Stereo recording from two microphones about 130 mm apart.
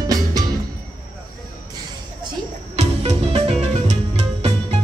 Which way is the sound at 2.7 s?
55° right (ahead or behind).